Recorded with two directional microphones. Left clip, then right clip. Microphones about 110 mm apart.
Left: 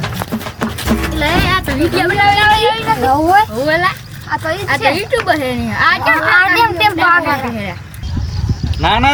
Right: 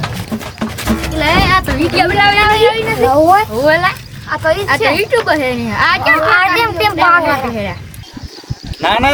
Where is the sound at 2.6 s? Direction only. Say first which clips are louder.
Right 2 dB; 15° right (ahead or behind).